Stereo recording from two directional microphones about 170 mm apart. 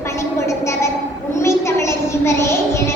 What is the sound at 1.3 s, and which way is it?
Child singing, 15° left (ahead or behind).